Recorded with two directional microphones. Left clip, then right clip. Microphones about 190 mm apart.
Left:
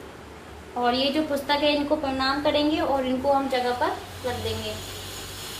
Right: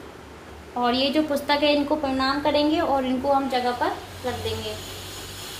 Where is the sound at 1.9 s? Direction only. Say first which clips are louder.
Even; 35° right (ahead or behind).